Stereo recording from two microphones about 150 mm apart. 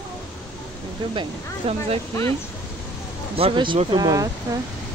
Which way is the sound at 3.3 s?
35° right (ahead or behind).